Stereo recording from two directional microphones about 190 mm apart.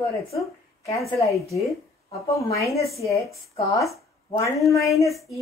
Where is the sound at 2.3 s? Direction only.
15° left (ahead or behind).